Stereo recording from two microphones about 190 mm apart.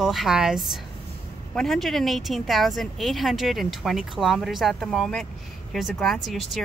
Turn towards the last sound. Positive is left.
turn(degrees=0)  # may be behind; listen again after turning